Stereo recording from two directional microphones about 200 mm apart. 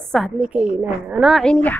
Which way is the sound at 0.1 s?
Centre (ahead or behind).